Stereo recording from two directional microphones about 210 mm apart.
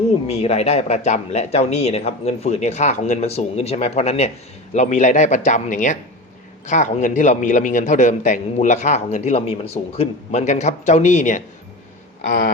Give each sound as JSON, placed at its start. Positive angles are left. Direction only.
{"t": 0.3, "sound": "a man's voice", "side_deg": 30}